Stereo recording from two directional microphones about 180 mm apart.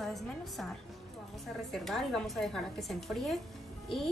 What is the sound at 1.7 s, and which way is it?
A woman's voice, centre (ahead or behind).